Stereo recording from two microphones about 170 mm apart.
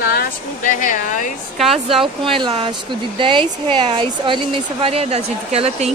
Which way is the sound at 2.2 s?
30° right (ahead or behind).